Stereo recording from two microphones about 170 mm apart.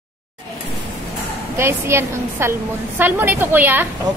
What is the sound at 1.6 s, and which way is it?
A woman's voice, 15° right (ahead or behind).